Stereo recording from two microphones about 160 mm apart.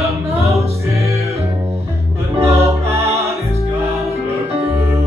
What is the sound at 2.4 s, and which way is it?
Music, 15° right (ahead or behind).